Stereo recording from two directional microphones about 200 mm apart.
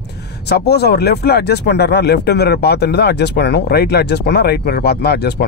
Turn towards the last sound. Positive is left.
turn(degrees=55)  # may be behind; listen again after turning